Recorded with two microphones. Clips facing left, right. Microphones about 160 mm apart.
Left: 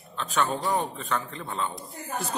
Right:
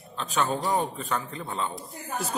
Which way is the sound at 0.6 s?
5° right (ahead or behind).